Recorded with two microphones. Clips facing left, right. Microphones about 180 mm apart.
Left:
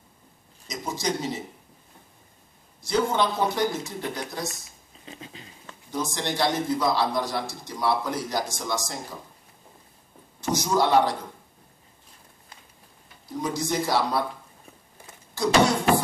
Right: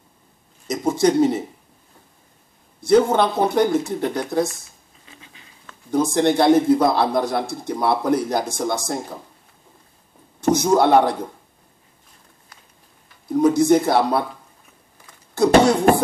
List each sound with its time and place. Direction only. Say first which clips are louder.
0.7 s a man's voice: right 11 dB; 55° right (ahead or behind)
2.9 s a man's voice: right 8 dB; 60° right (ahead or behind)
5.0 s a sound: left 7 dB; 30° left (ahead or behind)
5.9 s a man's voice: right 12 dB; 55° right (ahead or behind)
10.4 s a man's voice: right 7 dB; 55° right (ahead or behind)
13.3 s speech: right 13 dB; 55° right (ahead or behind)
15.3 s speech: right 7 dB; 55° right (ahead or behind)